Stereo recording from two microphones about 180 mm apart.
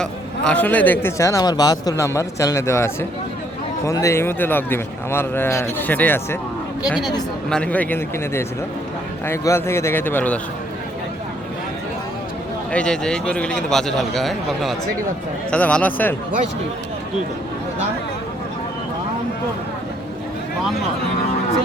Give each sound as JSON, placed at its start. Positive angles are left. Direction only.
{"t": 0.0, "sound": "a man's voice", "side_deg": 5}
{"t": 7.5, "sound": "a man's voice", "side_deg": 10}
{"t": 12.7, "sound": "a man's voice", "side_deg": 5}